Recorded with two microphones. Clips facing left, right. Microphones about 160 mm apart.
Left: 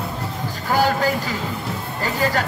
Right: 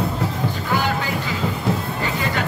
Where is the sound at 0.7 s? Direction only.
40° left (ahead or behind).